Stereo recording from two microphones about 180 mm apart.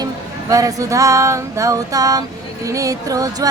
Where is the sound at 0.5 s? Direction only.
20° right (ahead or behind).